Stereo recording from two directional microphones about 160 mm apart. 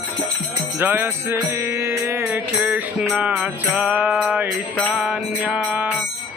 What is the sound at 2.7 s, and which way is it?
Mantra, 10° right (ahead or behind).